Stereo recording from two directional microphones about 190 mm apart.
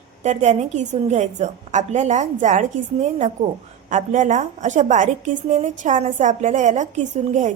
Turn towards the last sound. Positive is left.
turn(degrees=-40)  # may be behind; listen again after turning